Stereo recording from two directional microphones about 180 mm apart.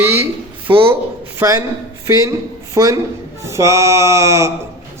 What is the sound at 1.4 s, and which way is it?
Mantra, 20° right (ahead or behind).